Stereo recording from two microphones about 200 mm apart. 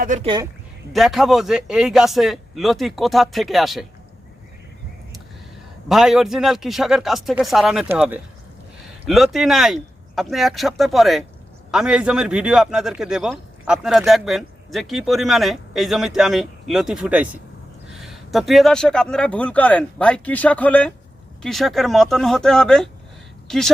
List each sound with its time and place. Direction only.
0.0 s speech: 40° right (ahead or behind)
0.9 s a man's voice: centre (ahead or behind)
5.9 s a man's voice: centre (ahead or behind)